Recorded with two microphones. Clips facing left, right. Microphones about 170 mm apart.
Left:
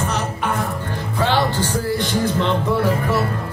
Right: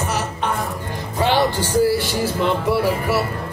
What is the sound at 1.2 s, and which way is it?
Music, 10° right (ahead or behind).